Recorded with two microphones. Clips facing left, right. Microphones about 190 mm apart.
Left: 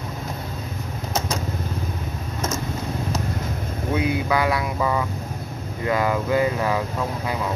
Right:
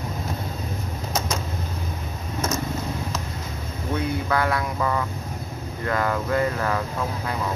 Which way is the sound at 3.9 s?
10° left (ahead or behind).